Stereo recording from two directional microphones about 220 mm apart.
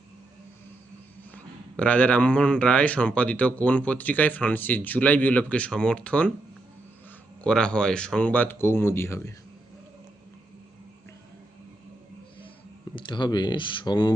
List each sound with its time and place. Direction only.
1.7 s speech: 5° left (ahead or behind)
7.4 s speech: 5° left (ahead or behind)
13.1 s speech: 20° left (ahead or behind)